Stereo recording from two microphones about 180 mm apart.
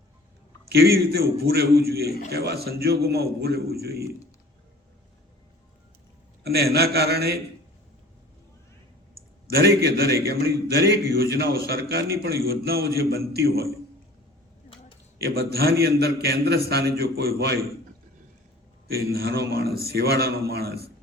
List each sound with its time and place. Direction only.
0.7 s a man's voice: 60° right (ahead or behind)
6.4 s a man's voice: 60° right (ahead or behind)
9.8 s a man's voice: 60° right (ahead or behind)
15.2 s a man's voice: 60° right (ahead or behind)
19.1 s a man's voice: 60° right (ahead or behind)